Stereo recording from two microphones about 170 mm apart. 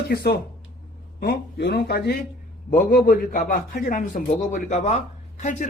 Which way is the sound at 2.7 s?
55° left (ahead or behind).